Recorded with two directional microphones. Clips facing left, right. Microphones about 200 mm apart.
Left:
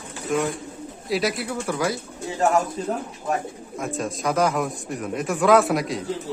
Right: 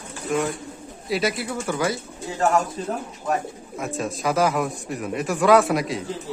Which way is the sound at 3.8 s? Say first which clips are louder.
Even; centre (ahead or behind).